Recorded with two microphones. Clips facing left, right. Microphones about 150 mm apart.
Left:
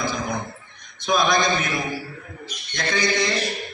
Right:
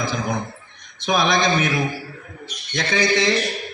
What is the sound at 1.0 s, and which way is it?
Speech, 85° right.